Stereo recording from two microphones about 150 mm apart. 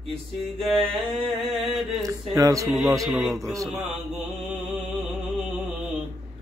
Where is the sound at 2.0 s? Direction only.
20° right (ahead or behind).